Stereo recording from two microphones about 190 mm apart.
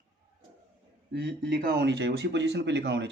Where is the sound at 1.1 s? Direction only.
65° right (ahead or behind).